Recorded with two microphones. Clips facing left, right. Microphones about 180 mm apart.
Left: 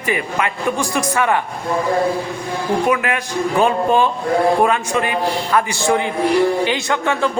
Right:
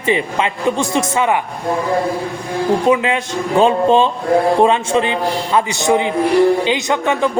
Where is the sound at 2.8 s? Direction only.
20° right (ahead or behind).